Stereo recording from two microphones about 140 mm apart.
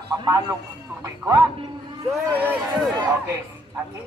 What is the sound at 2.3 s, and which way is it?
Speech, 10° right (ahead or behind).